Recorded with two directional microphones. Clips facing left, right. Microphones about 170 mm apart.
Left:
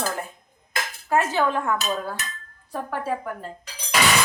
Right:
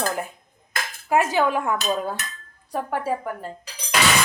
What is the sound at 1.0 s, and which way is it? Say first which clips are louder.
A woman's voice: right 2 dB; 15° right (ahead or behind).